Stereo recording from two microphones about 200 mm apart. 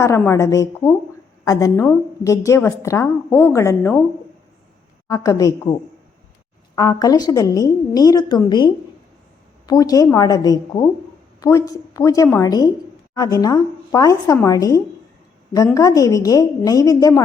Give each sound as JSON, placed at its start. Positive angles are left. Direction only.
{"t": 0.0, "sound": "a woman's voice", "side_deg": 15}
{"t": 5.0, "sound": "a woman's voice", "side_deg": 15}
{"t": 6.7, "sound": "a woman's voice", "side_deg": 20}